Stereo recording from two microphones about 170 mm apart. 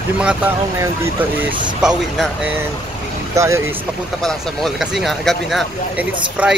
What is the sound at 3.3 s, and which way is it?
Speech, 15° right (ahead or behind).